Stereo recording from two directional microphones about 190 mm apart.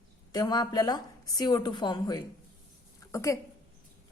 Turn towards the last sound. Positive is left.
turn(degrees=15)  # may be behind; listen again after turning